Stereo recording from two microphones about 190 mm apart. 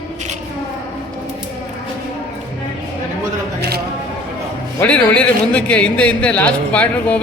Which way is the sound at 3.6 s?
55° right (ahead or behind).